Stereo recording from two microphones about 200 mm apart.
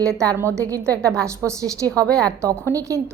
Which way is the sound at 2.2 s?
15° right (ahead or behind).